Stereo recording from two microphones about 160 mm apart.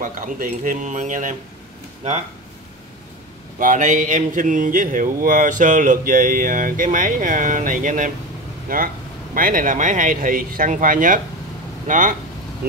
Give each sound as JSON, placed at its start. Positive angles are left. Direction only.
{"t": 0.0, "sound": "speech", "side_deg": -55}
{"t": 3.5, "sound": "speech", "side_deg": -55}